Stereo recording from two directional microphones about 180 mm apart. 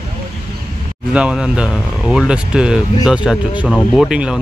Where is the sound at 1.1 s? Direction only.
5° right (ahead or behind).